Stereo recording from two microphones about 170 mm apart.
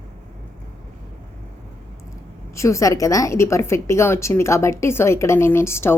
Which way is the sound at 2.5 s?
20° left (ahead or behind).